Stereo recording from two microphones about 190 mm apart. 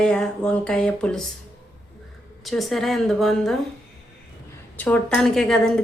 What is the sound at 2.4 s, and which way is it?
A woman's voice, centre (ahead or behind).